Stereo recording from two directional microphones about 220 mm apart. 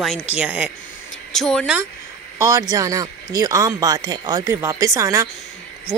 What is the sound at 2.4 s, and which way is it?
Speech, 15° right (ahead or behind).